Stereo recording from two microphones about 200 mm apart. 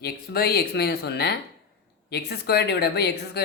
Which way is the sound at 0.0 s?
50° left (ahead or behind).